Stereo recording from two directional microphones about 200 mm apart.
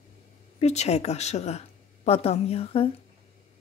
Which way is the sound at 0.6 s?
35° left (ahead or behind).